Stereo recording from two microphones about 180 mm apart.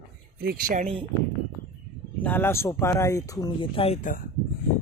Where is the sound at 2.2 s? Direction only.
10° left (ahead or behind); by 4.0 s 30° left (ahead or behind).